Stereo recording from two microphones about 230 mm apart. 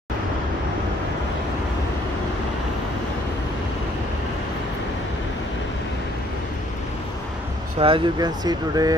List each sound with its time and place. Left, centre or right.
7.8 s speech: centre